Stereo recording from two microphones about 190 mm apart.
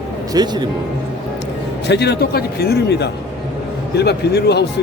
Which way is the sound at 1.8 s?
60° left (ahead or behind).